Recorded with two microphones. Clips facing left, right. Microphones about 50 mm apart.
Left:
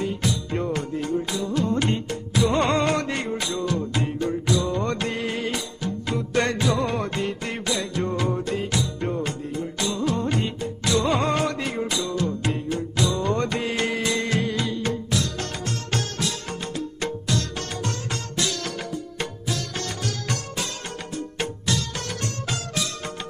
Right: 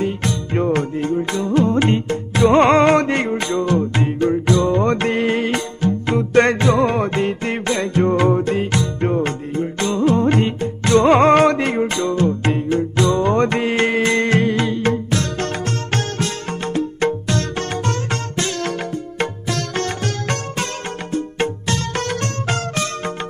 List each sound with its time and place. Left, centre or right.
0.0 s music: right
19.2 s music: right